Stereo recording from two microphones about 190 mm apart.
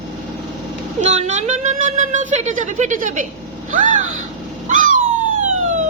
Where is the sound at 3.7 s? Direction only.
45° right (ahead or behind).